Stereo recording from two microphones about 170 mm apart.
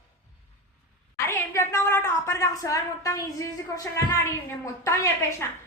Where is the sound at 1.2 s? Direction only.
15° left (ahead or behind).